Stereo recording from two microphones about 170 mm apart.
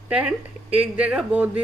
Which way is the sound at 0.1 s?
5° right (ahead or behind).